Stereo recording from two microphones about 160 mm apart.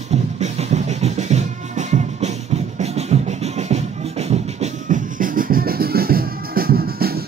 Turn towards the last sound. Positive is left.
turn(degrees=-70)  # may be behind; listen again after turning